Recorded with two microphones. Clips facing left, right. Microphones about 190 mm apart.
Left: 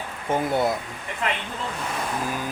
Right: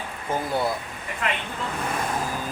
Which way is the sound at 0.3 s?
20° left (ahead or behind).